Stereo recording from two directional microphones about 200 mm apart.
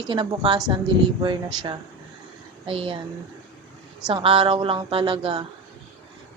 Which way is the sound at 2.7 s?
25° right (ahead or behind).